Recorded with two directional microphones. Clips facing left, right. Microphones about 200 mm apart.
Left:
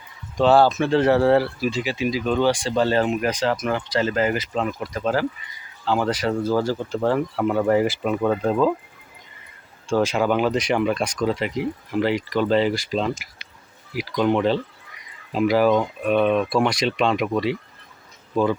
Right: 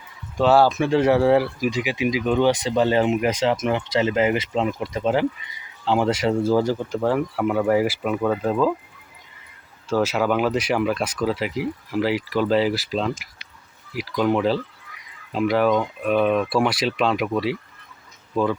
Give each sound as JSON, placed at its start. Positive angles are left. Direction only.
{"t": 0.3, "sound": "speech", "side_deg": -5}
{"t": 7.0, "sound": "speech", "side_deg": -10}
{"t": 9.9, "sound": "speech", "side_deg": -5}